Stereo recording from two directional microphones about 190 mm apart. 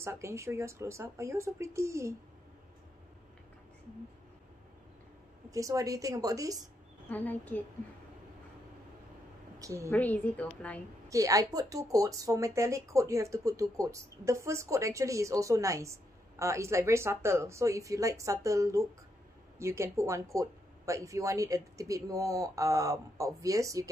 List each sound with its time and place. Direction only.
0.0 s speech: 15° right (ahead or behind)
5.5 s speech: 15° right (ahead or behind)
7.1 s a woman's voice: 10° left (ahead or behind)
9.6 s a woman's voice: 15° right (ahead or behind)
9.8 s a woman's voice: 10° left (ahead or behind)
11.1 s speech: 15° right (ahead or behind)